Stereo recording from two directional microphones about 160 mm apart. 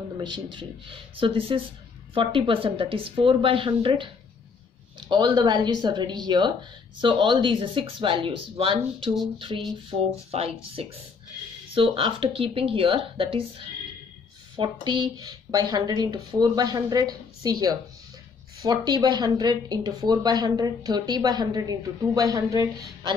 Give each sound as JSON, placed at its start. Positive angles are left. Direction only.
{"t": 0.2, "sound": "speech", "side_deg": -30}